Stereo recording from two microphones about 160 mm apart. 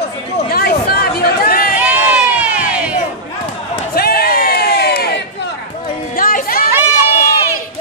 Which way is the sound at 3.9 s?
70° left (ahead or behind).